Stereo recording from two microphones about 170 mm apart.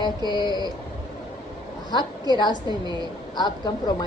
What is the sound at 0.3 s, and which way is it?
Speech, 25° left (ahead or behind).